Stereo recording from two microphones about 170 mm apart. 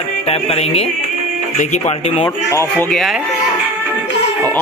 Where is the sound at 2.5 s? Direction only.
15° left (ahead or behind).